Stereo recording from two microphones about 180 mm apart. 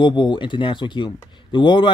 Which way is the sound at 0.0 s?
25° left (ahead or behind).